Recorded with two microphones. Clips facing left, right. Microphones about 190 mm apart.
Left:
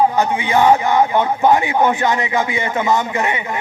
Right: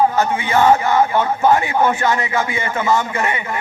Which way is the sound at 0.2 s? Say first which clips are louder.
Left 1 dB; 15° left (ahead or behind).